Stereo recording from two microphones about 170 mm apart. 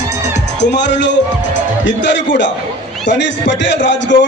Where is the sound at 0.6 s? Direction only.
90° left.